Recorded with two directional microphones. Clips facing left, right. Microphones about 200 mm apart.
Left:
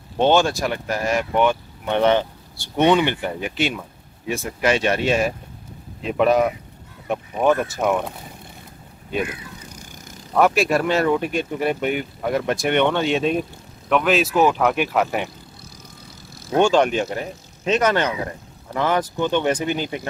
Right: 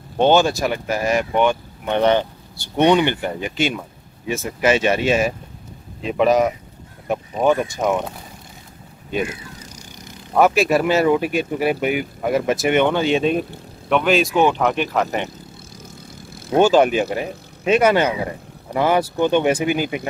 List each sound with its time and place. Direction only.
0.2 s speech: centre (ahead or behind)
9.6 s vehicle: 55° left (ahead or behind)
10.3 s speech: centre (ahead or behind)
16.5 s speech: 5° right (ahead or behind)